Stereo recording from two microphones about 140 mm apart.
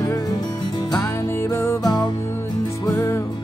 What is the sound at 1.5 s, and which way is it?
Music, 20° left (ahead or behind).